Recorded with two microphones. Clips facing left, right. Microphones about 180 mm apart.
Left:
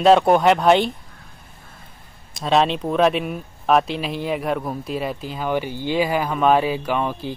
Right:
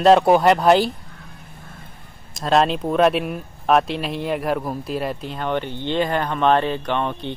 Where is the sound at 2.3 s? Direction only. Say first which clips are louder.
Even; centre (ahead or behind).